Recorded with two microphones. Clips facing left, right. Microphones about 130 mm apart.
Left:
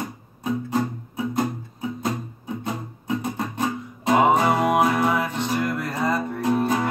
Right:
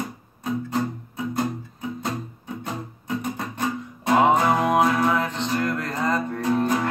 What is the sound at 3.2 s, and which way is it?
Music, 15° left (ahead or behind).